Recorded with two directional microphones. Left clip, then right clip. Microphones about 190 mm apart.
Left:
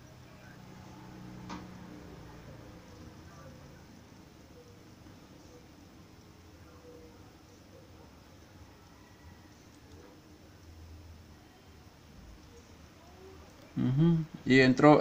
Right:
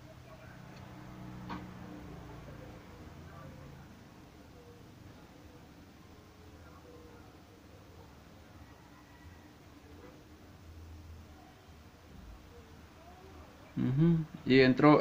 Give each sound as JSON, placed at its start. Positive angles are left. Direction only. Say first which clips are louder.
{"t": 13.7, "sound": "speech", "louder": "left 1 dB", "side_deg": 30}